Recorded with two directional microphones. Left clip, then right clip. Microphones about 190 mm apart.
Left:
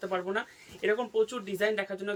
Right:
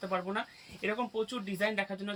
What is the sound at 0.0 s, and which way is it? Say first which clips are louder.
Speech: left 3 dB; 15° left (ahead or behind).